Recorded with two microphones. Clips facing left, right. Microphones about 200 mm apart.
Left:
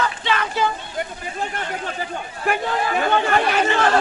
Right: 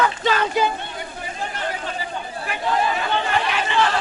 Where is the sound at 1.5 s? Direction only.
50° left (ahead or behind).